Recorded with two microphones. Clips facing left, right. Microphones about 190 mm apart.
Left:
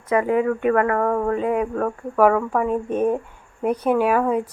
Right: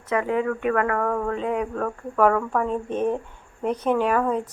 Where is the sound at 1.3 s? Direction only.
5° left (ahead or behind).